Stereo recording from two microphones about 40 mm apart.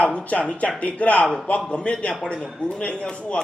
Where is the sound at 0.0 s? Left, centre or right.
Left.